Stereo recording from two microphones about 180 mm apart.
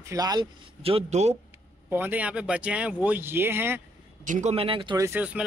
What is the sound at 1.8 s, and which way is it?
Speech, 10° right (ahead or behind).